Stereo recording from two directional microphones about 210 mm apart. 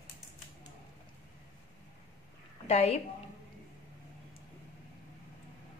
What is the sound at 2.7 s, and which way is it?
Speech, 30° left (ahead or behind).